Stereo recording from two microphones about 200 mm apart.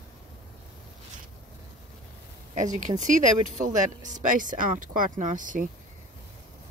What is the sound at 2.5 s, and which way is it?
Speech, 40° right (ahead or behind).